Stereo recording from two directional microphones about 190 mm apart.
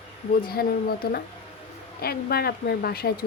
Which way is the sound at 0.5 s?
55° left (ahead or behind).